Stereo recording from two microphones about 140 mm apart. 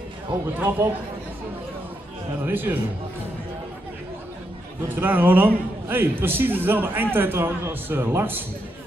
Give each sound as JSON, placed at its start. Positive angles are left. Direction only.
{"t": 0.6, "sound": "a man's voice", "side_deg": -15}
{"t": 2.4, "sound": "a man's voice", "side_deg": -15}
{"t": 4.8, "sound": "a man's voice", "side_deg": -15}